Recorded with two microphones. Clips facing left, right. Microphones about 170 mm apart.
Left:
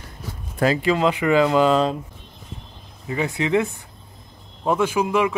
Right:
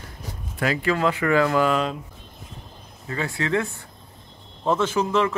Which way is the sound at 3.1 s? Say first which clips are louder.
Left 4 dB; 20° left (ahead or behind).